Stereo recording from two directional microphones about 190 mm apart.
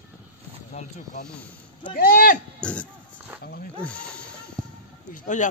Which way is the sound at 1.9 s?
50° left (ahead or behind).